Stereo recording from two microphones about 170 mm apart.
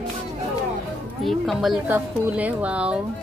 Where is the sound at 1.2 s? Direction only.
Centre (ahead or behind).